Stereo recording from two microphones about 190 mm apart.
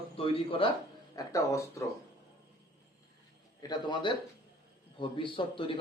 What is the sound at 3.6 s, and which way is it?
Speech, 20° left (ahead or behind).